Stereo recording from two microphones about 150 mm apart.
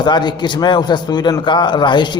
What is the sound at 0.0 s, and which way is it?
A man's voice, 30° left (ahead or behind).